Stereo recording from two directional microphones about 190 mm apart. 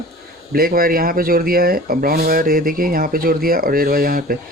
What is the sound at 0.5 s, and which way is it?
Speech, 50° right (ahead or behind).